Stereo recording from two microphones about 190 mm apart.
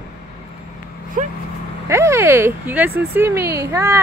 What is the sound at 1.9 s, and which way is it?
Speech, 15° right (ahead or behind).